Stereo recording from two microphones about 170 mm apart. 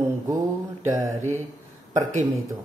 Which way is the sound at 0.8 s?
20° right (ahead or behind).